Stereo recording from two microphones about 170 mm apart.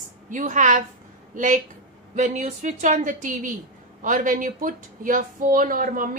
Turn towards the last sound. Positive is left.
turn(degrees=-55)  # may be behind; listen again after turning